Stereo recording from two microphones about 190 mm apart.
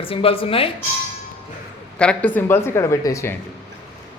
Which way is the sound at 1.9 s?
5° left (ahead or behind).